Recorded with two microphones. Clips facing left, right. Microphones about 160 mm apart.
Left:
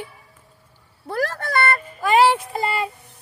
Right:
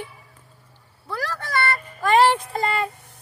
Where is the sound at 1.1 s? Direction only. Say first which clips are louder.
Left 4 dB; 50° left (ahead or behind).